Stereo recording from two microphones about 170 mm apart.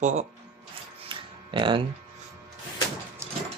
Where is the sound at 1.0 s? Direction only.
30° right (ahead or behind).